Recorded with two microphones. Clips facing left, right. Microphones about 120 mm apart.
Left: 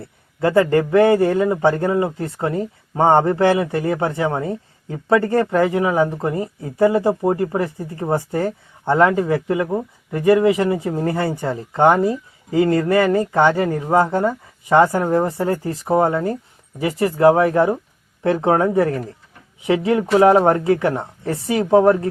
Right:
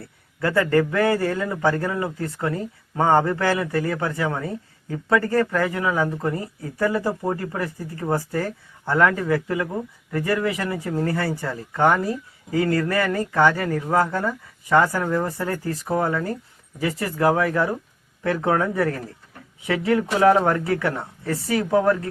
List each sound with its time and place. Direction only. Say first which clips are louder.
0.0 s a man's voice: left 6 dB; 25° left (ahead or behind)